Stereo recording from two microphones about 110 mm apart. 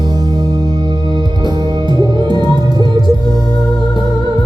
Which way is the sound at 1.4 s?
40° right (ahead or behind).